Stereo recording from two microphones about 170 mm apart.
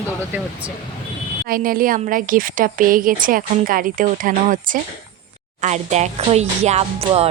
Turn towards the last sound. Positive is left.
turn(degrees=-35)  # may be behind; listen again after turning